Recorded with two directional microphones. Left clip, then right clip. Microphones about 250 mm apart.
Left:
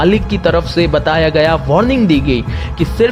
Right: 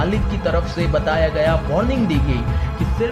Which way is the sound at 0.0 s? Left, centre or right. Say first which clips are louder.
Left 9 dB; left.